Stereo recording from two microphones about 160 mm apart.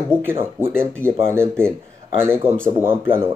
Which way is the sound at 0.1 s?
15° right (ahead or behind).